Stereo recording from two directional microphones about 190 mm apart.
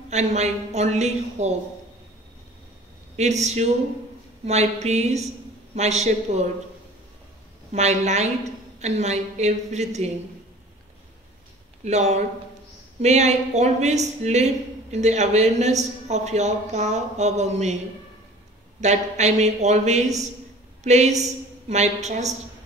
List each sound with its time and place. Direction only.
0.1 s speech: 35° right (ahead or behind)
3.2 s speech: 35° right (ahead or behind)
7.7 s speech: 35° right (ahead or behind)
11.8 s speech: 35° right (ahead or behind)
18.8 s speech: 35° right (ahead or behind)